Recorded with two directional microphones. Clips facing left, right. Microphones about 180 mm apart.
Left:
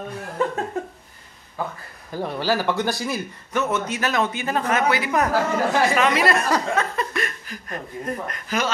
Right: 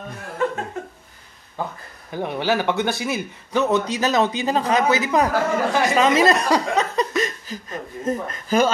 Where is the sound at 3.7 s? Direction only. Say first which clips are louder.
Right 4 dB; 35° right (ahead or behind).